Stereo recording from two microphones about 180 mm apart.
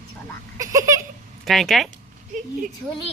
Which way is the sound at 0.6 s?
20° right (ahead or behind).